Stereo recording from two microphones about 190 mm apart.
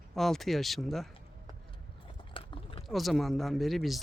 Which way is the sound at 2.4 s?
25° left (ahead or behind).